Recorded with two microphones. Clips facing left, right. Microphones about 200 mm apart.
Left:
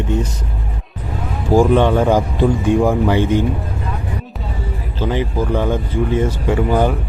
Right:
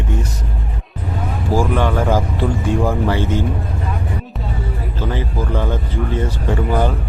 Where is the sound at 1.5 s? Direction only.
20° left (ahead or behind).